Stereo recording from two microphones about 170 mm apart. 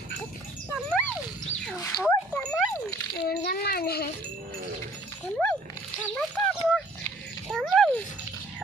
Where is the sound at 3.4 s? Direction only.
65° left (ahead or behind).